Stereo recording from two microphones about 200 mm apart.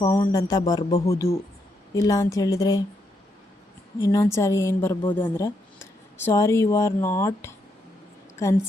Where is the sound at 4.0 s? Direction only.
15° left (ahead or behind).